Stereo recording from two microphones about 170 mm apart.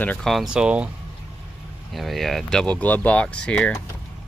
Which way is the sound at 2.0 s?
Centre (ahead or behind).